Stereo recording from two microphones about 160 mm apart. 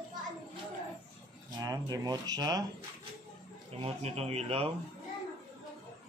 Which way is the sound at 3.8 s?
40° right (ahead or behind).